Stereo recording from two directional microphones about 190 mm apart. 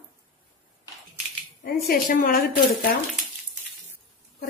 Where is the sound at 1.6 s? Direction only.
50° left (ahead or behind).